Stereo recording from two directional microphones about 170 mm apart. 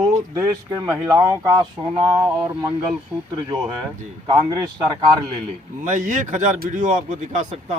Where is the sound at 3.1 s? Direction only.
Centre (ahead or behind).